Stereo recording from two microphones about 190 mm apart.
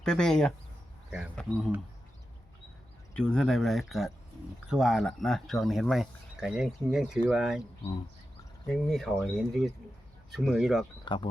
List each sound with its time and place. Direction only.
0.0 s speech: 5° left (ahead or behind)
3.2 s speech: 5° left (ahead or behind)
8.7 s speech: centre (ahead or behind)
11.0 s speech: 25° left (ahead or behind)